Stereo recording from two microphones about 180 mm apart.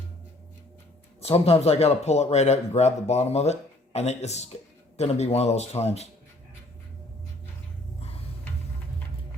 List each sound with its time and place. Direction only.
1.2 s speech: 35° left (ahead or behind)